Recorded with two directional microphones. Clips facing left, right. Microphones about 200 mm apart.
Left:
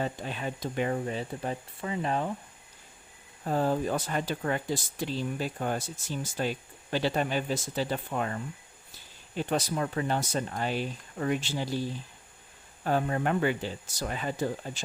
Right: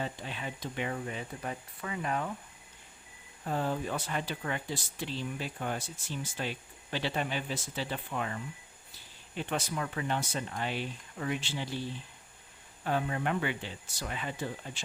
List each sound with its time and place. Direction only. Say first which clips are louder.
0.0 s speech: left 5 dB; 45° left (ahead or behind); by 2.3 s 30° left (ahead or behind)
3.4 s speech: left 5 dB; 40° left (ahead or behind)